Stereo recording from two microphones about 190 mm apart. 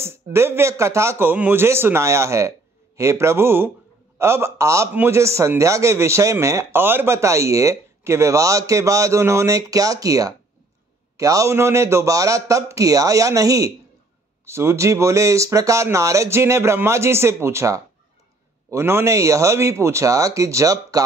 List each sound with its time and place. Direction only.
0.0 s a man's voice: 15° right (ahead or behind)